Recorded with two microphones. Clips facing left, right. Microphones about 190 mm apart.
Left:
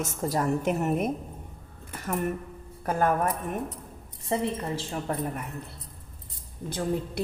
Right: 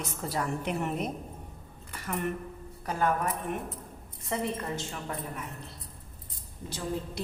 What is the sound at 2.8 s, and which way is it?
Speech, 50° left (ahead or behind).